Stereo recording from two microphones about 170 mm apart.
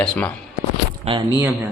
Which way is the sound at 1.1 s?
35° right (ahead or behind).